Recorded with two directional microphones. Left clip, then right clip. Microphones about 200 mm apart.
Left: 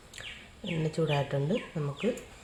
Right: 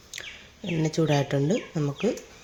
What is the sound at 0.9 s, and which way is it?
Speech, 35° right (ahead or behind).